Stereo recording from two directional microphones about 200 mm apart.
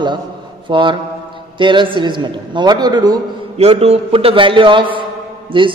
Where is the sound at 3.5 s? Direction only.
30° right (ahead or behind).